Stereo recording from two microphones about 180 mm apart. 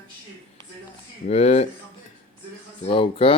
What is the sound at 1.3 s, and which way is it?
Speech, 35° left (ahead or behind).